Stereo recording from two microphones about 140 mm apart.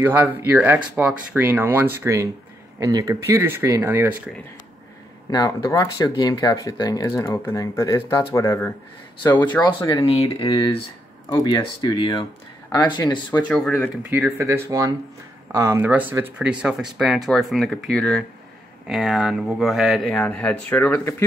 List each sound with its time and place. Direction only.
0.0 s speech: 15° right (ahead or behind)
5.3 s speech: 25° left (ahead or behind)
10.0 s speech: 45° left (ahead or behind)
11.2 s speech: 25° left (ahead or behind)
13.4 s speech: 5° left (ahead or behind)
14.4 s speech: 25° right (ahead or behind); by 21.0 s 10° left (ahead or behind)